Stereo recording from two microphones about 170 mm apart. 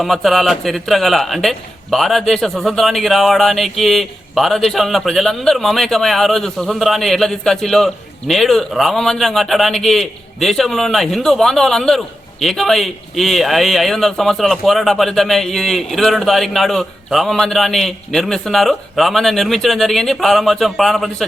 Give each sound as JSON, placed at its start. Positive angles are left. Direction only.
{"t": 0.0, "sound": "a man's voice", "side_deg": 0}